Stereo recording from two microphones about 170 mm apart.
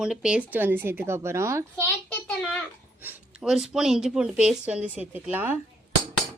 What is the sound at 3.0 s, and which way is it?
Speech, 10° right (ahead or behind).